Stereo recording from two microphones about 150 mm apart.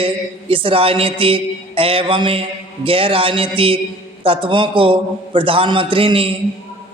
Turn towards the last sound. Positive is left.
turn(degrees=-40)  # may be behind; listen again after turning